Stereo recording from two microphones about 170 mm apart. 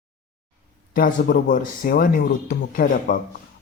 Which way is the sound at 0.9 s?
55° left (ahead or behind).